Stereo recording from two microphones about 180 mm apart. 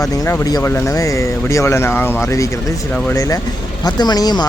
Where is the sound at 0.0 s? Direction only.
15° left (ahead or behind).